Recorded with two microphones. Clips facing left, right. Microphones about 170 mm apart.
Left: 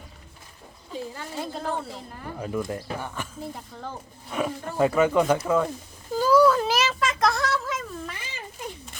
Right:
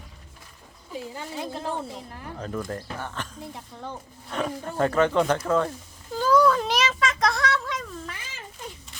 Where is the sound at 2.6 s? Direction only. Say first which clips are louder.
Left 2 dB; 10° left (ahead or behind).